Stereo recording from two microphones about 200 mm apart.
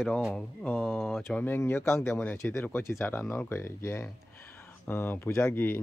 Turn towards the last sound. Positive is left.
turn(degrees=10)  # may be behind; listen again after turning